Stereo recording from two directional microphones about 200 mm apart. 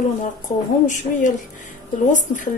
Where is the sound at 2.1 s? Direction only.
40° left (ahead or behind).